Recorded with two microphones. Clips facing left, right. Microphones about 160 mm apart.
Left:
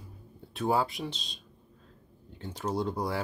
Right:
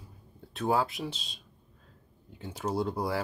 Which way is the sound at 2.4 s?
5° right (ahead or behind).